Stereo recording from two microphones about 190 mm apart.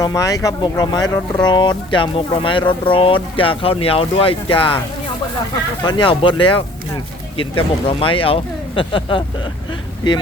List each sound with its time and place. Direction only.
0.0 s speech: 20° left (ahead or behind)
5.8 s speech: 25° left (ahead or behind)
7.9 s speech: 30° left (ahead or behind)